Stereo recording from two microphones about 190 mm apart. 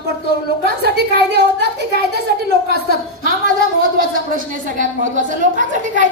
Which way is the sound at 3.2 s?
50° right (ahead or behind).